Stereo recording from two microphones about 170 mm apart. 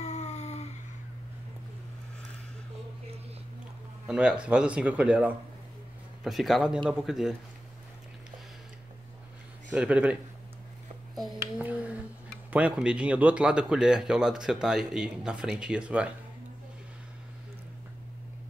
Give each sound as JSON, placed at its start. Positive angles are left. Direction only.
{"t": 0.0, "sound": "a sound", "side_deg": 40}
{"t": 4.1, "sound": "speech", "side_deg": -5}
{"t": 9.7, "sound": "speech", "side_deg": -5}
{"t": 11.1, "sound": "speech", "side_deg": -5}